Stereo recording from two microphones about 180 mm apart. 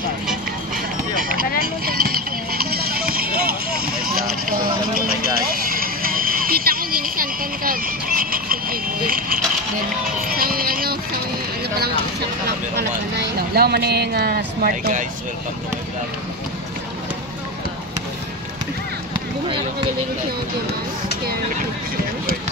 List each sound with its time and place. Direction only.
1.9 s music: 55° right (ahead or behind)
10.2 s speech: 55° right (ahead or behind)
13.6 s speech: 60° right (ahead or behind)